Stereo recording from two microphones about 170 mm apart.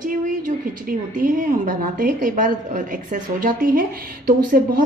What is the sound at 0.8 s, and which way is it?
A woman's voice, 55° right (ahead or behind).